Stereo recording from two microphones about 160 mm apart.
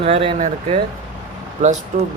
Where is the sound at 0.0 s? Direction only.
35° right (ahead or behind).